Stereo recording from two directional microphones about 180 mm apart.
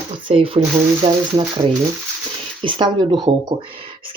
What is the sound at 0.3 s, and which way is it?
Speech, 30° right (ahead or behind).